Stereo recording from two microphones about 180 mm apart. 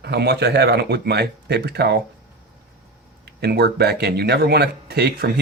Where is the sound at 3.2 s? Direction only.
65° right (ahead or behind).